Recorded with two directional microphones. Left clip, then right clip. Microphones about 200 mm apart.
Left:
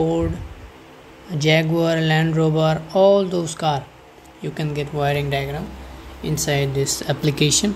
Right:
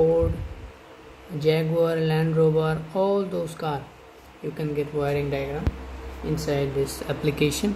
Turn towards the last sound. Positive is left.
turn(degrees=20)  # may be behind; listen again after turning